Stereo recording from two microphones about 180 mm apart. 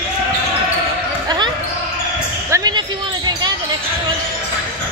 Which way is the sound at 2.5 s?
20° right (ahead or behind).